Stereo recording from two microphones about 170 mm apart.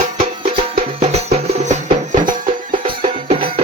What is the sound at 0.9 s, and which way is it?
Music, 35° right (ahead or behind).